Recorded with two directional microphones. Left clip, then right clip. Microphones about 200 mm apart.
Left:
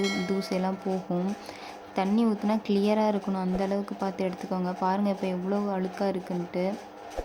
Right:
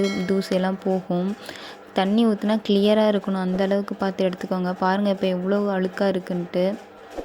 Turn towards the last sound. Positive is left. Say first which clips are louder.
# right 7 dB
turn(degrees=-20)  # may be behind; listen again after turning